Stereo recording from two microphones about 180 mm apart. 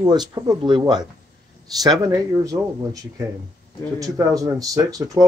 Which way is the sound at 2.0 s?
15° right (ahead or behind).